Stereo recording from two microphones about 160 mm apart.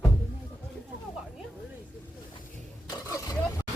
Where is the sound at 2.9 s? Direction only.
20° left (ahead or behind).